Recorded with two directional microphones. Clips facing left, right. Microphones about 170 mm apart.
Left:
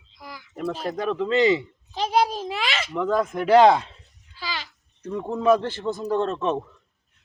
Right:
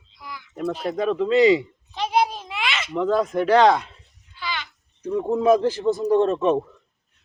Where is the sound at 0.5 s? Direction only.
Centre (ahead or behind).